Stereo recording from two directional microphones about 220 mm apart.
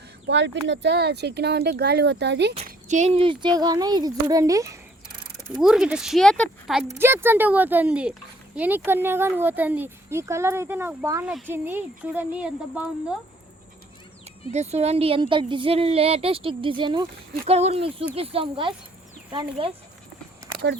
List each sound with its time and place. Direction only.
0.3 s speech: 55° right (ahead or behind)
2.6 s speech: 30° right (ahead or behind); by 5.1 s 15° right (ahead or behind)
5.5 s speech: 5° right (ahead or behind)
6.8 s speech: 10° right (ahead or behind)
14.5 s a woman's voice: 30° right (ahead or behind)